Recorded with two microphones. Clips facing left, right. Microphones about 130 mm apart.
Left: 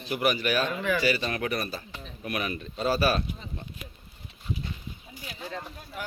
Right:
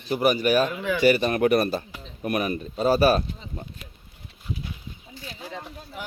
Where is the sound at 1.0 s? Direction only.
50° right (ahead or behind).